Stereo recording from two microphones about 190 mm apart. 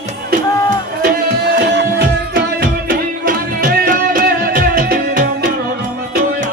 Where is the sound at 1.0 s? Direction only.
60° right (ahead or behind).